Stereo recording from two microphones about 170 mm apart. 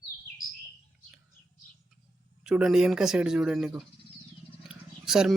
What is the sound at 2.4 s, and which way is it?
Speech, 5° right (ahead or behind).